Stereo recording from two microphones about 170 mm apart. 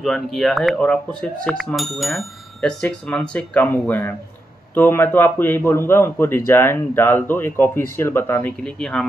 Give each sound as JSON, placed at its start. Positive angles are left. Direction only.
{"t": 0.0, "sound": "a man's voice", "side_deg": 0}